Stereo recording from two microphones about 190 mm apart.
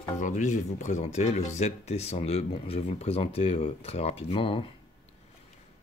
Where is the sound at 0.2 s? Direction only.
40° left (ahead or behind).